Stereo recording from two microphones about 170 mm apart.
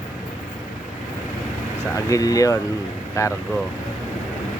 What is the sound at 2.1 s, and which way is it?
Speech, 20° left (ahead or behind).